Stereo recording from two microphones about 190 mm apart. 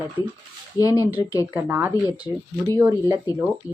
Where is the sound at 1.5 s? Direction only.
10° right (ahead or behind).